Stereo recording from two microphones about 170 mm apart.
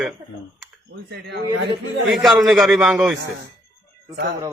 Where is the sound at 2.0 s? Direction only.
Centre (ahead or behind).